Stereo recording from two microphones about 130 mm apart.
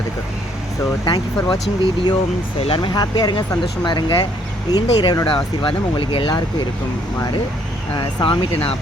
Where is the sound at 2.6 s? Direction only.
45° left (ahead or behind).